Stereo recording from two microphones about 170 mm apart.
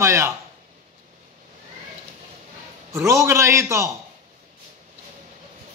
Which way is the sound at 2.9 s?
15° right (ahead or behind).